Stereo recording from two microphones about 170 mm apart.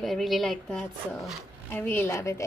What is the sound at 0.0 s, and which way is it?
Speech, centre (ahead or behind).